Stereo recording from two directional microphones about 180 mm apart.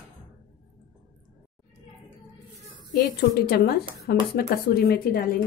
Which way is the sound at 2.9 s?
60° left (ahead or behind).